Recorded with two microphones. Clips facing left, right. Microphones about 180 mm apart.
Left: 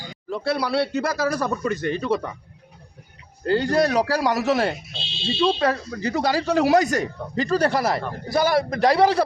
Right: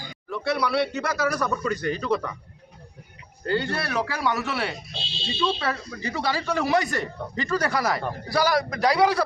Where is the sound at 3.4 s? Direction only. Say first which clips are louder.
Left 7 dB; 40° left (ahead or behind).